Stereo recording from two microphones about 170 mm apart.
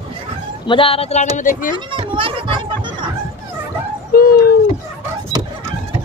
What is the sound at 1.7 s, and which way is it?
Children playing, 30° right (ahead or behind).